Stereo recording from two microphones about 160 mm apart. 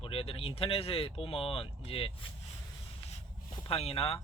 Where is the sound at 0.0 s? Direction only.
35° left (ahead or behind).